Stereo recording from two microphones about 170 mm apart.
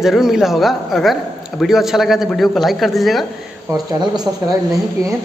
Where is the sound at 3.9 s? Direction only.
25° right (ahead or behind).